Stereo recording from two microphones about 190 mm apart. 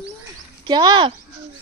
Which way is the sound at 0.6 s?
20° right (ahead or behind).